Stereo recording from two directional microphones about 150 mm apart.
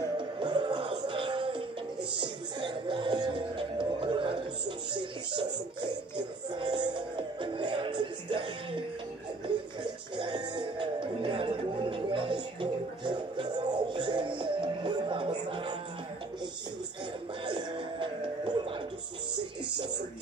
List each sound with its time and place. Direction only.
0.2 s music: 30° right (ahead or behind)
9.8 s music: 30° right (ahead or behind)
17.5 s music: 30° right (ahead or behind)